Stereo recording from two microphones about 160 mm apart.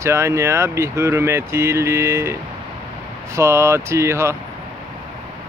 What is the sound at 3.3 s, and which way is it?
Speech, 15° right (ahead or behind).